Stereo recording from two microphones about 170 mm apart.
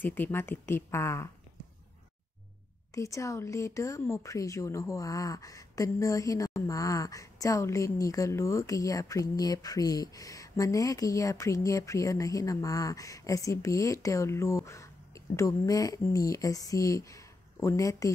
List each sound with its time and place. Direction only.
0.0 s speech: 10° left (ahead or behind)
2.9 s speech: 20° left (ahead or behind)